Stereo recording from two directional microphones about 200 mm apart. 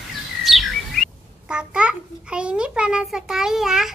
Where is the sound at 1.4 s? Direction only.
5° right (ahead or behind).